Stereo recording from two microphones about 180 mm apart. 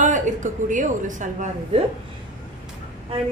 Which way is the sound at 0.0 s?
45° right (ahead or behind).